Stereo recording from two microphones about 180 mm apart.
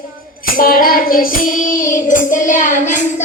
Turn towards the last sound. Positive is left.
turn(degrees=40)  # may be behind; listen again after turning